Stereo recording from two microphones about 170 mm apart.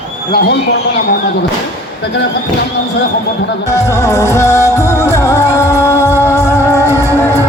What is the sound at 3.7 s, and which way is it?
Music, 20° left (ahead or behind).